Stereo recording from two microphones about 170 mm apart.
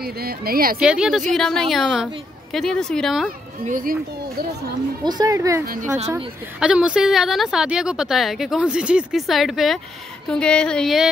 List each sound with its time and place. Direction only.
0.0 s speech: 65° right (ahead or behind)
0.7 s a woman's voice: 5° right (ahead or behind)
3.6 s speech: 55° right (ahead or behind)
5.0 s a woman's voice: 25° right (ahead or behind)
5.7 s speech: 50° right (ahead or behind)
6.0 s a woman's voice: 5° right (ahead or behind)